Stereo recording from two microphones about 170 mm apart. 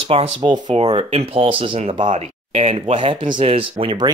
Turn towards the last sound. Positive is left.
turn(degrees=-30)  # may be behind; listen again after turning